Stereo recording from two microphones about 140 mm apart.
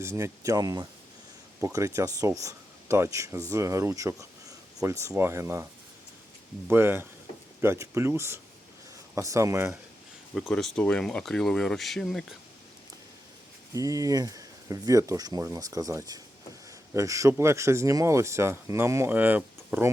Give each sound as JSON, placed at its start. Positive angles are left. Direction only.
{"t": 0.0, "sound": "speech", "side_deg": -20}
{"t": 6.7, "sound": "speech", "side_deg": -15}
{"t": 10.3, "sound": "speech", "side_deg": 0}
{"t": 13.7, "sound": "speech", "side_deg": -25}